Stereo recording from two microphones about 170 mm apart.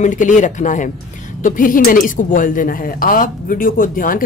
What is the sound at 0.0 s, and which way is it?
Speech, 45° left (ahead or behind).